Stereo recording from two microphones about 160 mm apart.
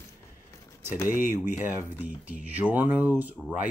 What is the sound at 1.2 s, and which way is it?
Speech, 15° right (ahead or behind).